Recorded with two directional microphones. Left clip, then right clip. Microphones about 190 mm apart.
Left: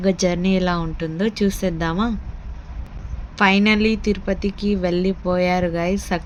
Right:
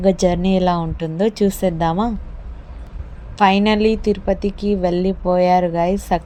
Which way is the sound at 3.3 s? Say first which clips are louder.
Right 2 dB; 15° right (ahead or behind).